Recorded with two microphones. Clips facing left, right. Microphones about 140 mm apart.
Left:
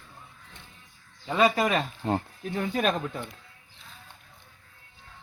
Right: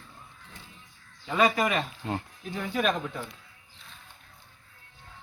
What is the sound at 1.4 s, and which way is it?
Speech, 35° left (ahead or behind).